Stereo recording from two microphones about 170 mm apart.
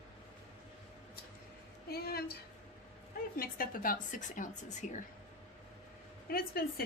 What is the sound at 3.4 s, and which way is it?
A woman's voice, 55° left (ahead or behind).